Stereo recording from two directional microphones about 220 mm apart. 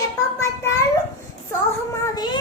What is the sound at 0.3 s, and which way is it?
Child singing, 15° left (ahead or behind).